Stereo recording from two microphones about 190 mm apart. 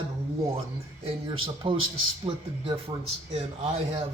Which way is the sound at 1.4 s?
30° right (ahead or behind).